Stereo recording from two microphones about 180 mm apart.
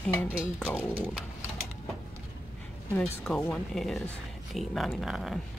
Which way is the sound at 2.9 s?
5° left (ahead or behind).